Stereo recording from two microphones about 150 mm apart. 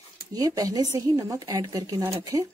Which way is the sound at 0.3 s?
25° right (ahead or behind).